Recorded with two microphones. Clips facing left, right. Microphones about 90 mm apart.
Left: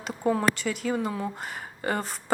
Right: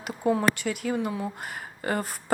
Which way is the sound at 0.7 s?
30° left (ahead or behind).